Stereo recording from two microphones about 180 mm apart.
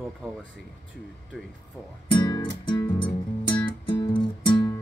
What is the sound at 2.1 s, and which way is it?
Music, 30° left (ahead or behind).